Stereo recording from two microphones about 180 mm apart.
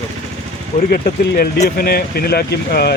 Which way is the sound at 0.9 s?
55° left (ahead or behind).